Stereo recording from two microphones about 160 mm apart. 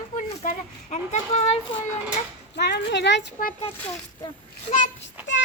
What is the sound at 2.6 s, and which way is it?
Speech, 90° left.